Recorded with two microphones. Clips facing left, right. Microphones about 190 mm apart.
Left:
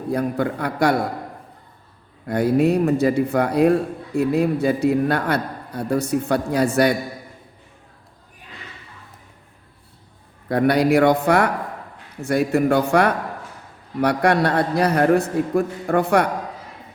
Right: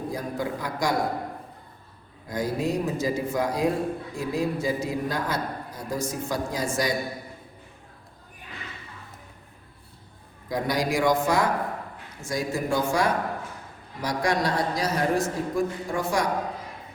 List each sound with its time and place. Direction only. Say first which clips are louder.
0.1 s a man's voice: left 13 dB; 65° left (ahead or behind)
2.2 s a man's voice: left 9 dB; 65° left (ahead or behind)
10.5 s a man's voice: left 9 dB; 65° left (ahead or behind)